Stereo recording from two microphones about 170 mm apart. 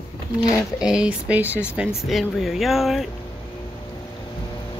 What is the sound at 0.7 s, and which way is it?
Speech, 5° right (ahead or behind).